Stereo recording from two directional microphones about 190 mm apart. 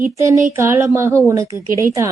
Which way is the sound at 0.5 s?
15° right (ahead or behind).